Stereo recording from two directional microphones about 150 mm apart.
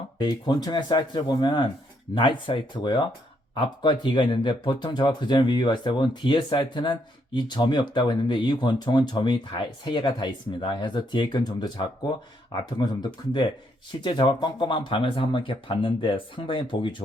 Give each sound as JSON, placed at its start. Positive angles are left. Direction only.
{"t": 0.2, "sound": "speech", "side_deg": 25}